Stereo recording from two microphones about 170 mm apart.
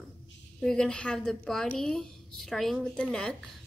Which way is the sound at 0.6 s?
5° left (ahead or behind).